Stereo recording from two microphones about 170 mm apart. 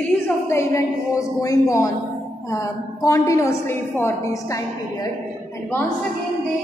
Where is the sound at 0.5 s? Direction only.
15° left (ahead or behind).